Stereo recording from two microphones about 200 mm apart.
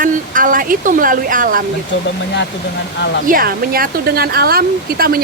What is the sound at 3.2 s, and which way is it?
Speech, 45° right (ahead or behind).